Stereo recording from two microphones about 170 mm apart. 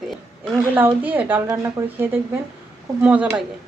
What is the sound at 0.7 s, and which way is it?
Speech, 10° right (ahead or behind).